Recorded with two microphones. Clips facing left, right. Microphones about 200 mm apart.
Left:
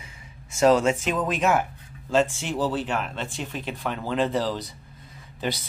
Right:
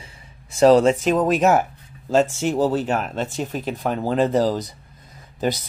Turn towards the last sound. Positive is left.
turn(degrees=-45)  # may be behind; listen again after turning